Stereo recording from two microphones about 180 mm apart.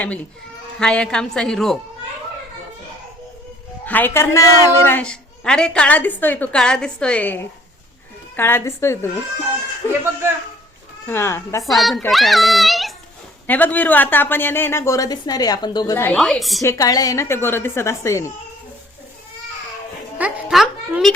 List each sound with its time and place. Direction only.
0.8 s a woman's voice: 5° left (ahead or behind)
3.8 s a woman's voice: 10° left (ahead or behind)
8.4 s a woman's voice: 10° left (ahead or behind)
11.0 s a woman's voice: 15° left (ahead or behind)
11.6 s a woman's voice: centre (ahead or behind); by 16.1 s 15° left (ahead or behind)
16.1 s a woman's voice: centre (ahead or behind)
16.6 s a woman's voice: 20° left (ahead or behind)
20.1 s a woman's voice: 5° right (ahead or behind)